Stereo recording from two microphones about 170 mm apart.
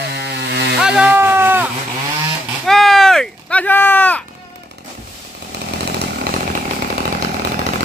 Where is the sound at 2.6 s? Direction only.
Centre (ahead or behind).